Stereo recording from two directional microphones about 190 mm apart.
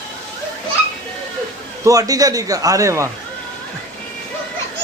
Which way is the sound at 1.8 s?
20° right (ahead or behind).